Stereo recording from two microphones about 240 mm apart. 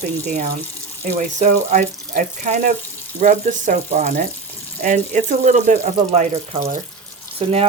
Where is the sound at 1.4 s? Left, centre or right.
Right.